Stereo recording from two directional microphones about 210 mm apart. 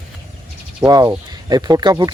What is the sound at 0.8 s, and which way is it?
Speech, 15° right (ahead or behind).